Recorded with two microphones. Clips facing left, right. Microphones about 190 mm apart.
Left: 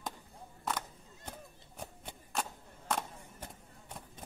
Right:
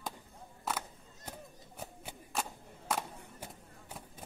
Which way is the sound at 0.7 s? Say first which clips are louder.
Even; 5° right (ahead or behind).